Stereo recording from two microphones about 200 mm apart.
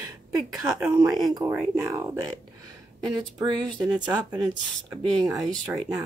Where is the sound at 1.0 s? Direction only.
20° right (ahead or behind).